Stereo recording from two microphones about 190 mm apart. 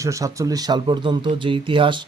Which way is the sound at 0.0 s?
15° right (ahead or behind).